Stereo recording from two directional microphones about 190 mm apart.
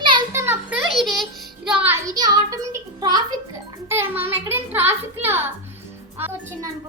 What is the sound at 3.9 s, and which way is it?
Child singing, 10° right (ahead or behind).